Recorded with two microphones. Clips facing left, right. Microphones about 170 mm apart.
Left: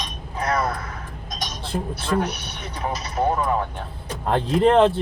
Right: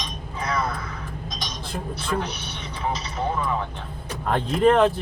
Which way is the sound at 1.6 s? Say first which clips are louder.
Left 4 dB; 30° left (ahead or behind).